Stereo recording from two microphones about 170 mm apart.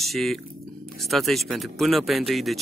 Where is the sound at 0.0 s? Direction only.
Centre (ahead or behind).